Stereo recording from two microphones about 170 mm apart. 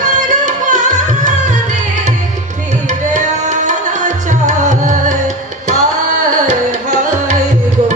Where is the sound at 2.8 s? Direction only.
45° right (ahead or behind).